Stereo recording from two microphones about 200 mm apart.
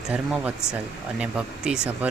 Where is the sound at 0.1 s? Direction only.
5° right (ahead or behind).